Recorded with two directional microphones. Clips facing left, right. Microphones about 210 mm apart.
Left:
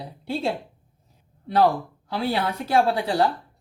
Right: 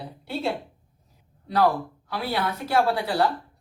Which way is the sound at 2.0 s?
25° left (ahead or behind).